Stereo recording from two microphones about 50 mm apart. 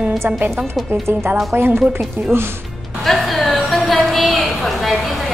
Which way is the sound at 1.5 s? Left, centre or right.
Right.